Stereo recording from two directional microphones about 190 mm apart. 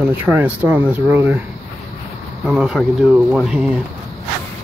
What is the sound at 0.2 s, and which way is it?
Speech, 10° right (ahead or behind).